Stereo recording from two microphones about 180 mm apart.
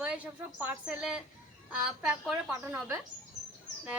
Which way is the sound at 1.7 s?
5° right (ahead or behind).